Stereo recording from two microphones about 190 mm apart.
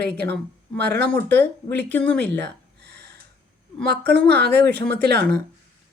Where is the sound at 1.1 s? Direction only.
10° left (ahead or behind).